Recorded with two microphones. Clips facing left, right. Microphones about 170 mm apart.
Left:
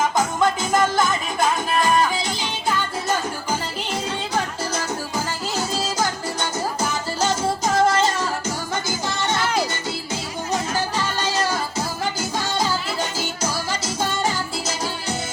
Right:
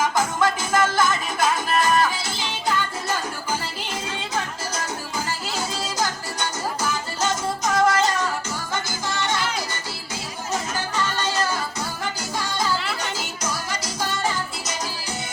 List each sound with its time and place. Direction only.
0.3 s music: 20° left (ahead or behind)
7.2 s music: 30° left (ahead or behind)
13.0 s music: 30° left (ahead or behind)